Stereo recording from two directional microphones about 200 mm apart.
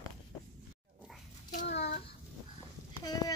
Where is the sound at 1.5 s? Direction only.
60° left (ahead or behind).